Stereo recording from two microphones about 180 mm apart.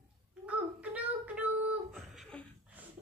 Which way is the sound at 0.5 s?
10° right (ahead or behind).